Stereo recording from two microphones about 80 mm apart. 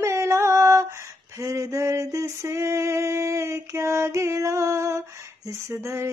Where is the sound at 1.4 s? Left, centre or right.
Right.